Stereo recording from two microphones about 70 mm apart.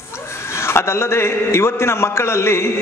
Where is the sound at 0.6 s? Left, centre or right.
Left.